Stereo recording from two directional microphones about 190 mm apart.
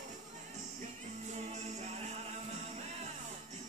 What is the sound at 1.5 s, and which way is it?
Music, 35° right (ahead or behind).